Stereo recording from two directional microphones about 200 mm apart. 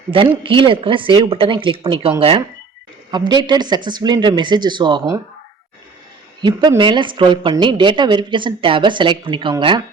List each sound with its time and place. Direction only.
0.1 s a woman's voice: 25° right (ahead or behind)
6.4 s a woman's voice: 25° right (ahead or behind)